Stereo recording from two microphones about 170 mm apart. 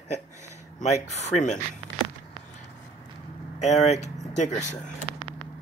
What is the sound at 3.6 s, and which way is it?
Speech, 40° left (ahead or behind).